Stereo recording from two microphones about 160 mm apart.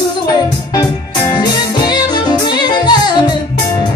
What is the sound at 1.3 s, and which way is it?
Music, 25° left (ahead or behind).